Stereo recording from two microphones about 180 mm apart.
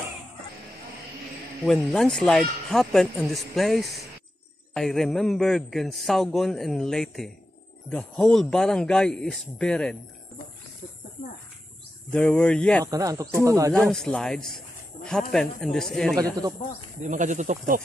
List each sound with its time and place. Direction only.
1.6 s a man's voice: centre (ahead or behind)
12.1 s a man's voice: 5° left (ahead or behind)
12.8 s speech: 20° right (ahead or behind)
13.7 s a man's voice: centre (ahead or behind)
17.0 s speech: 45° right (ahead or behind)